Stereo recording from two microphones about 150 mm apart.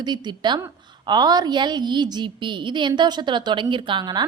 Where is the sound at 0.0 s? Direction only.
30° right (ahead or behind).